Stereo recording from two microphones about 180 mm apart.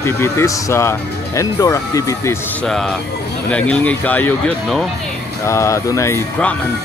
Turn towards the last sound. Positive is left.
turn(degrees=10)  # may be behind; listen again after turning